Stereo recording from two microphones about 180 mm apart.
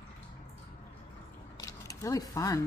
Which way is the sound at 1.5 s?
20° left (ahead or behind).